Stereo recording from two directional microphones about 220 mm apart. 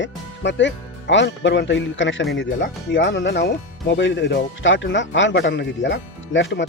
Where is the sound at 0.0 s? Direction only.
55° left (ahead or behind).